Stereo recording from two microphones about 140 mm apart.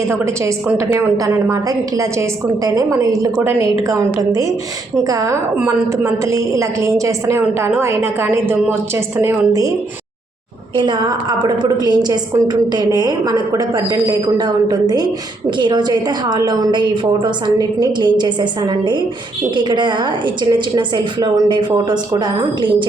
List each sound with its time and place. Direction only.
0.1 s a woman's voice: 20° right (ahead or behind)
10.8 s a woman's voice: 35° right (ahead or behind)